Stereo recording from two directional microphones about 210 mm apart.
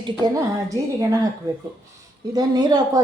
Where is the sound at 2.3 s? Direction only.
20° right (ahead or behind).